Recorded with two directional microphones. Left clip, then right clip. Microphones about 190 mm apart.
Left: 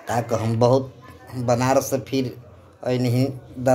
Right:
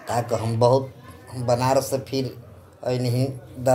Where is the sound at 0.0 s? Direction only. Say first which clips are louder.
Left 1 dB; 15° left (ahead or behind).